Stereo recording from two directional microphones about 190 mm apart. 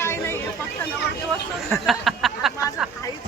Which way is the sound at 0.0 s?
15° left (ahead or behind).